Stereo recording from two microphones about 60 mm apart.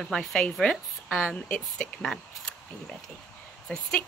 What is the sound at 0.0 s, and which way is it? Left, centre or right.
Speech, centre.